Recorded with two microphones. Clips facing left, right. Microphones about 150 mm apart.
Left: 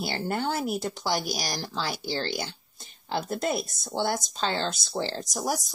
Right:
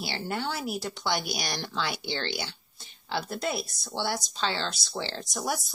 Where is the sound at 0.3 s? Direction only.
45° left (ahead or behind).